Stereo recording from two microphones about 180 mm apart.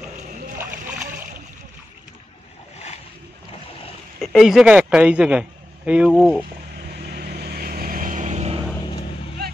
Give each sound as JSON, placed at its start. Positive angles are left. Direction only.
{"t": 4.2, "sound": "a man's voice", "side_deg": 0}
{"t": 6.9, "sound": "vehicle", "side_deg": -60}